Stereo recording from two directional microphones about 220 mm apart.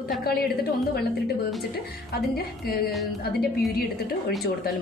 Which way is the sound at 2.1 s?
45° left (ahead or behind).